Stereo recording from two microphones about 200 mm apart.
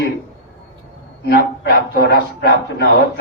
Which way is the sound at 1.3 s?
50° left (ahead or behind).